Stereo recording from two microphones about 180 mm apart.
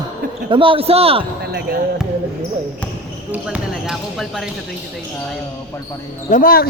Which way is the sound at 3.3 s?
5° right (ahead or behind).